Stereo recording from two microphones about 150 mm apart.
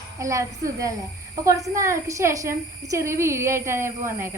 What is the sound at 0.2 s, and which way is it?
A woman's voice, 20° right (ahead or behind).